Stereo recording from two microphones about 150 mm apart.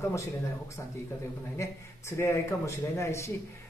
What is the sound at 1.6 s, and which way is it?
Speech, 20° left (ahead or behind).